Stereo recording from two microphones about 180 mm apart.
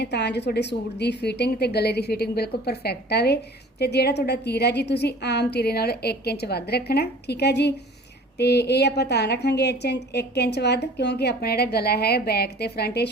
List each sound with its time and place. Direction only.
0.0 s a woman's voice: 70° left (ahead or behind)